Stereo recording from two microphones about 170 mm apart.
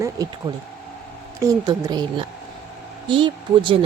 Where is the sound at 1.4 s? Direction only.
20° right (ahead or behind).